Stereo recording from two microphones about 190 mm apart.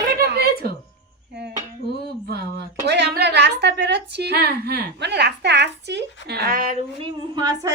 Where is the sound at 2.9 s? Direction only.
60° right (ahead or behind).